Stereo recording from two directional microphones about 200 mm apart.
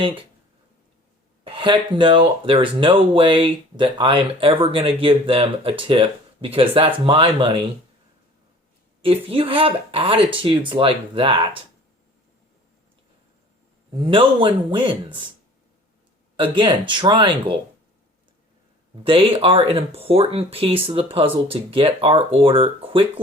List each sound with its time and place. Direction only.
0.0 s speech: 25° right (ahead or behind)
1.5 s speech: 25° right (ahead or behind)
9.0 s speech: 25° right (ahead or behind)
14.1 s speech: 25° right (ahead or behind)
16.4 s speech: 25° right (ahead or behind)
19.0 s speech: 25° right (ahead or behind)